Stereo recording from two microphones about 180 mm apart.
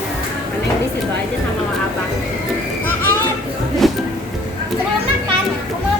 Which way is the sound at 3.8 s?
Centre (ahead or behind).